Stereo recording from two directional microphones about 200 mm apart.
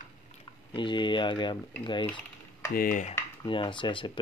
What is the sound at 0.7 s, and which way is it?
Speech, 25° left (ahead or behind).